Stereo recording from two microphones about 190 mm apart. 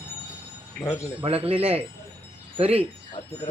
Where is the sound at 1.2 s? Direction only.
30° right (ahead or behind).